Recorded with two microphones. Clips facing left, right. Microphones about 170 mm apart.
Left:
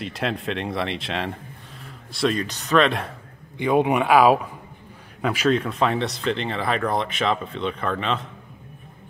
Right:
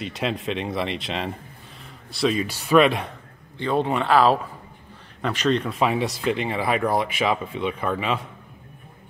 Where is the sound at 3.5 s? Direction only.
15° left (ahead or behind); by 8.2 s 10° right (ahead or behind).